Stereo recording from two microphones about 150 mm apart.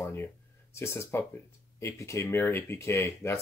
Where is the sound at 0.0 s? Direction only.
15° left (ahead or behind).